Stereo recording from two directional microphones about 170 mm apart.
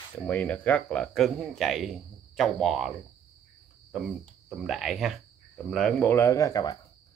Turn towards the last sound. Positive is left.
turn(degrees=20)  # may be behind; listen again after turning